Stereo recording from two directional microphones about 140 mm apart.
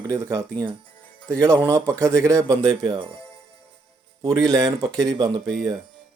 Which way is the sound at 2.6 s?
35° right (ahead or behind).